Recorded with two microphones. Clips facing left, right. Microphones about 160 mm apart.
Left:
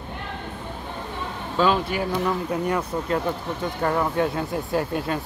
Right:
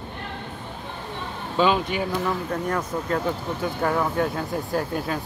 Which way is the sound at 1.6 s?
Centre (ahead or behind).